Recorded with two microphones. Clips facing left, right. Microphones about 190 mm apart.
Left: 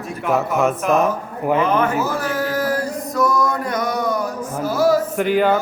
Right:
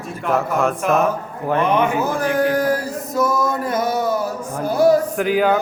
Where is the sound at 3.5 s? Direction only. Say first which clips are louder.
Right 1 dB; 25° right (ahead or behind).